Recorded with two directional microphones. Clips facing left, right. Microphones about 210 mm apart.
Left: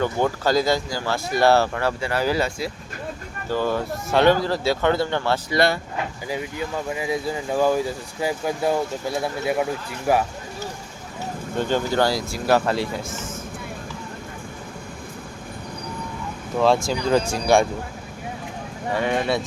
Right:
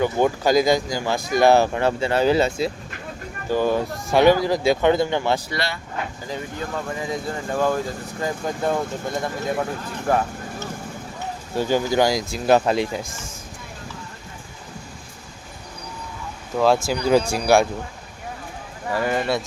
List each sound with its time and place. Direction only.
0.0 s speech: 15° right (ahead or behind)
7.0 s speech: 5° left (ahead or behind)
11.5 s speech: 10° right (ahead or behind)
16.6 s speech: 5° right (ahead or behind)
18.9 s speech: centre (ahead or behind)